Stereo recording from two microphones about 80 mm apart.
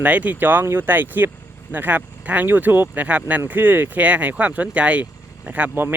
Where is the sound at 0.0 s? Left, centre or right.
Centre.